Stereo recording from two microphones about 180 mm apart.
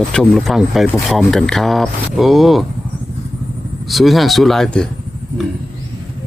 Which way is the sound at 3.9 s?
Centre (ahead or behind).